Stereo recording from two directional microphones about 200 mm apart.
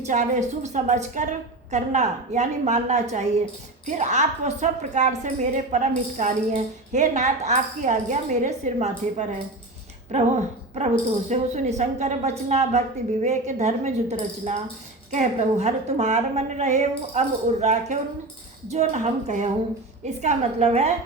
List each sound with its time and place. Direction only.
0.0 s a woman's voice: 35° right (ahead or behind)